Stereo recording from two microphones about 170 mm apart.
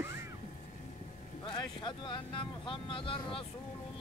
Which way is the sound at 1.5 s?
25° left (ahead or behind).